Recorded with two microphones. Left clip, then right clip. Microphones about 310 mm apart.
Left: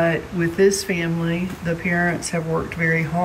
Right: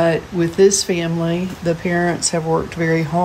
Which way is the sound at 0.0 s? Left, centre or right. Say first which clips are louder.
Right 4 dB; centre.